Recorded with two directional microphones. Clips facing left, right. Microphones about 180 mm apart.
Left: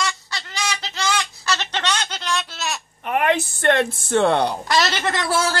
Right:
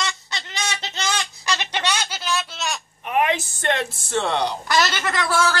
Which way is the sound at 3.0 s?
60° left (ahead or behind).